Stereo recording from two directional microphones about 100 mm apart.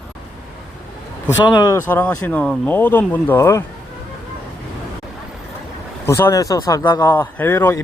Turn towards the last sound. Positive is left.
turn(degrees=25)  # may be behind; listen again after turning